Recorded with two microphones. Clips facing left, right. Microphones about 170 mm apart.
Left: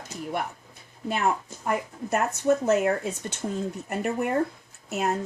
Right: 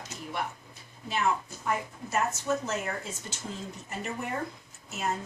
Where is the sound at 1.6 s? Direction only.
60° left (ahead or behind).